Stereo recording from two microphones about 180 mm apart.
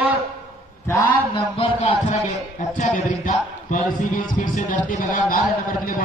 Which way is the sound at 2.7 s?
45° left (ahead or behind).